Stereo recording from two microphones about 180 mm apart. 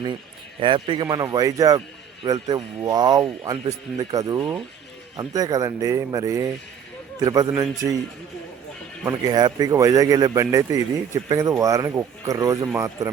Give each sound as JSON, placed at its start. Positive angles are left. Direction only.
{"t": 0.6, "sound": "speech", "side_deg": -25}
{"t": 9.0, "sound": "speech", "side_deg": -20}